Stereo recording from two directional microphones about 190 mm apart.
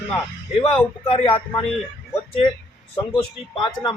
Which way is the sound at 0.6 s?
30° left (ahead or behind).